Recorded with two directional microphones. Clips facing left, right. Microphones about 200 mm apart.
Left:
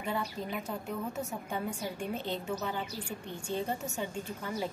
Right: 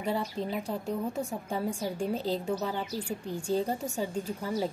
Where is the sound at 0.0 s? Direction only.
35° right (ahead or behind).